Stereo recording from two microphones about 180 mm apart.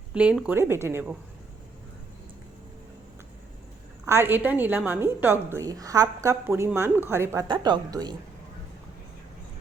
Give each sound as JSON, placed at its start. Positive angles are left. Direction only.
{"t": 0.1, "sound": "a woman's voice", "side_deg": -5}
{"t": 4.0, "sound": "a woman's voice", "side_deg": -15}
{"t": 7.4, "sound": "speech", "side_deg": -25}